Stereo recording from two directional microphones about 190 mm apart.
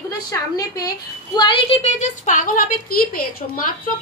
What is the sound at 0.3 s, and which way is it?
A woman's voice, 20° left (ahead or behind).